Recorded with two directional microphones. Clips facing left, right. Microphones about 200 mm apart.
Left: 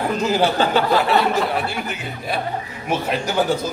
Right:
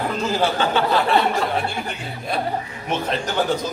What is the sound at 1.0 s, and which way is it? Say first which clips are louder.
A man's voice: left 1 dB; 5° left (ahead or behind).